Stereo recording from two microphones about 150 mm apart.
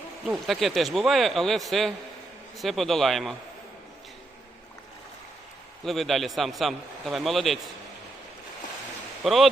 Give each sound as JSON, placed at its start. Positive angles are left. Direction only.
{"t": 0.3, "sound": "a man's voice", "side_deg": 0}
{"t": 5.8, "sound": "a man's voice", "side_deg": 0}
{"t": 9.2, "sound": "a man's voice", "side_deg": 0}